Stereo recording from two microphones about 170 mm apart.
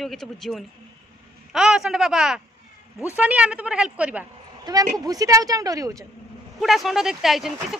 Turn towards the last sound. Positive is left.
turn(degrees=0)  # may be behind; listen again after turning